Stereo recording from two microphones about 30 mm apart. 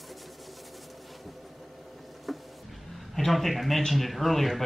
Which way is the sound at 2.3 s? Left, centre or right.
Centre.